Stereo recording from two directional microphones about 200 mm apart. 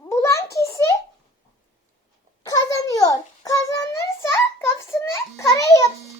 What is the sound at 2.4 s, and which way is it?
A child's voice, 20° left (ahead or behind).